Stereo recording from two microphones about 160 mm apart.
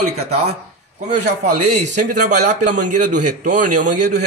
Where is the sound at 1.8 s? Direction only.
50° right (ahead or behind).